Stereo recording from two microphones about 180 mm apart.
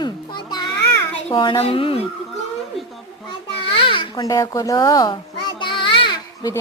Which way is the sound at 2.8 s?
Centre (ahead or behind).